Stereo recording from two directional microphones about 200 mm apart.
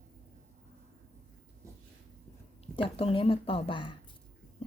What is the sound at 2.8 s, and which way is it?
Speech, 25° left (ahead or behind).